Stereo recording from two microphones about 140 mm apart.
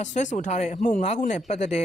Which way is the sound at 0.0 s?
60° left (ahead or behind).